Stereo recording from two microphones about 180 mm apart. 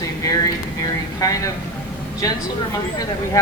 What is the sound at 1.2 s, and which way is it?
Speech, 20° left (ahead or behind).